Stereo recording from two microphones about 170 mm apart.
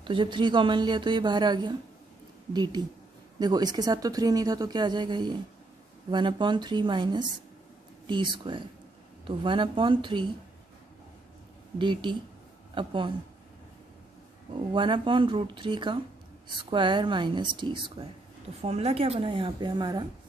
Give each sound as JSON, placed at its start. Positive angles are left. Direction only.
{"t": 0.0, "sound": "a woman's voice", "side_deg": -30}
{"t": 11.8, "sound": "speech", "side_deg": -30}
{"t": 14.7, "sound": "speech", "side_deg": -30}
{"t": 18.6, "sound": "a woman's voice", "side_deg": -40}